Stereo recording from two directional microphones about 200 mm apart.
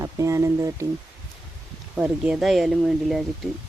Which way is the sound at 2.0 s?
5° right (ahead or behind).